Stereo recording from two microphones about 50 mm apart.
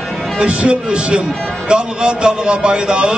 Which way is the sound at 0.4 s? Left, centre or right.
Centre.